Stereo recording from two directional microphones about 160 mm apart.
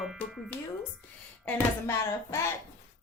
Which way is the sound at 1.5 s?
15° left (ahead or behind).